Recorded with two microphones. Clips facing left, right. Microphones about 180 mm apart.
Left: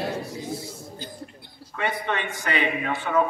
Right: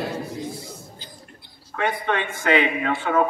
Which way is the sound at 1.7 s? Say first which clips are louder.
Right 3 dB; 55° right (ahead or behind).